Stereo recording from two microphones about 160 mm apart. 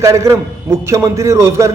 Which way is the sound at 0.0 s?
20° right (ahead or behind).